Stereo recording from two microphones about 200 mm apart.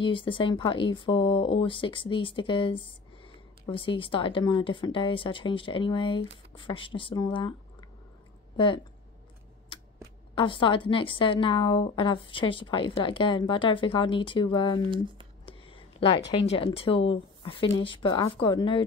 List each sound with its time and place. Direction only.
0.0 s a woman's voice: 25° left (ahead or behind)
8.5 s a woman's voice: 25° left (ahead or behind)
10.3 s a woman's voice: 25° left (ahead or behind)
14.9 s speech: 25° right (ahead or behind)
15.4 s a sound: 25° left (ahead or behind)
16.3 s a woman's voice: 25° left (ahead or behind)